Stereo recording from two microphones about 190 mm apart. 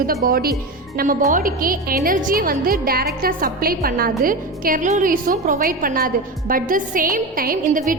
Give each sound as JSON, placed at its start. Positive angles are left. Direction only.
{"t": 0.1, "sound": "a woman's voice", "side_deg": -50}